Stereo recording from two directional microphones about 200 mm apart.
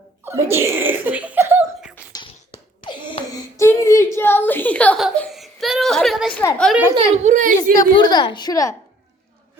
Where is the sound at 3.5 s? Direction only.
15° left (ahead or behind); by 6.8 s centre (ahead or behind).